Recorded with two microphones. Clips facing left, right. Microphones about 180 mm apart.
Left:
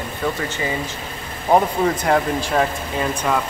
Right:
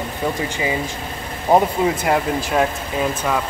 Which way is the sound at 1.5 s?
5° right (ahead or behind).